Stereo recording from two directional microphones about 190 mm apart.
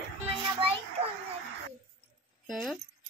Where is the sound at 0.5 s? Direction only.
30° right (ahead or behind).